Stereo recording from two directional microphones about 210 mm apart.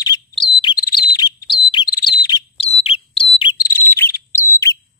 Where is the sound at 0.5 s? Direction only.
20° left (ahead or behind).